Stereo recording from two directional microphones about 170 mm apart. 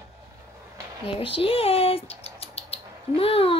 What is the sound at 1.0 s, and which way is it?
Rodents, 30° left (ahead or behind).